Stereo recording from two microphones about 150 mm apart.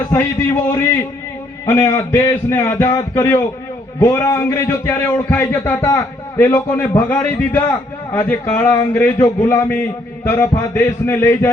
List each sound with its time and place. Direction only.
0.1 s a man's voice: 15° left (ahead or behind)